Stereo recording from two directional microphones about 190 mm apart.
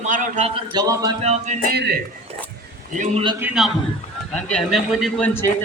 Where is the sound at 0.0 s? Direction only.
40° right (ahead or behind).